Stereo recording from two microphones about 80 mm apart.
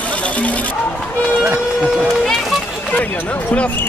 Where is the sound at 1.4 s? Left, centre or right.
Centre.